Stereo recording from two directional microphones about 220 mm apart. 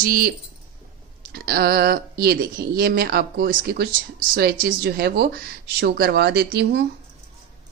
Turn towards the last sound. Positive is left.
turn(degrees=-50)  # may be behind; listen again after turning